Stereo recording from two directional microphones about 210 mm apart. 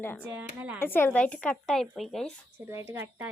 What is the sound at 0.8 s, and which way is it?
Speech, 10° left (ahead or behind).